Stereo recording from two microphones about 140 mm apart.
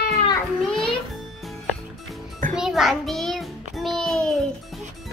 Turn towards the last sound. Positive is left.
turn(degrees=5)  # may be behind; listen again after turning